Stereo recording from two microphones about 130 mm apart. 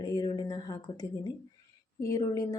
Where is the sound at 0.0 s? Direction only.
30° left (ahead or behind).